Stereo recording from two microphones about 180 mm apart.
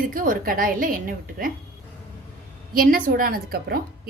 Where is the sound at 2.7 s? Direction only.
55° right (ahead or behind).